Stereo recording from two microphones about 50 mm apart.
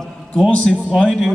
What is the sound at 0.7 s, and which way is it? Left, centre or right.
Speech, centre.